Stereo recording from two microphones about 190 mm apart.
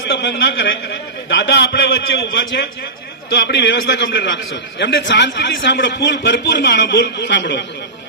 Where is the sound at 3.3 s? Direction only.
60° left (ahead or behind).